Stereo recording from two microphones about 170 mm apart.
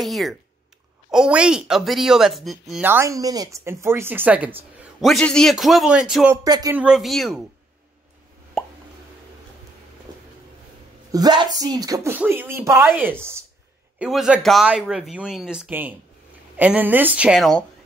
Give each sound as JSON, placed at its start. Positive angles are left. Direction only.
{"t": 0.0, "sound": "speech", "side_deg": 0}
{"t": 2.8, "sound": "speech", "side_deg": -15}
{"t": 5.0, "sound": "speech", "side_deg": 0}
{"t": 6.3, "sound": "speech", "side_deg": -20}
{"t": 6.8, "sound": "speech", "side_deg": 0}
{"t": 8.6, "sound": "plop", "side_deg": 0}
{"t": 11.1, "sound": "speech", "side_deg": -25}